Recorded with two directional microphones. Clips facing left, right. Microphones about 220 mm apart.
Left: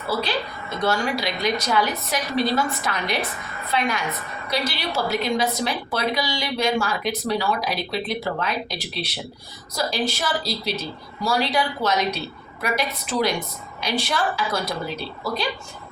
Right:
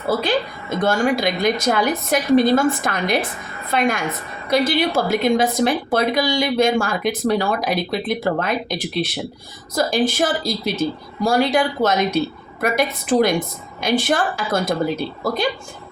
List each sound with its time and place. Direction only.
0.1 s a woman's voice: 50° right (ahead or behind)